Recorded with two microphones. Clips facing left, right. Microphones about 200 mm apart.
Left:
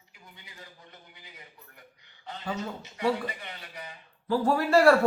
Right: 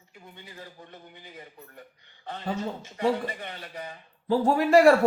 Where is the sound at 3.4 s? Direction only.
50° right (ahead or behind).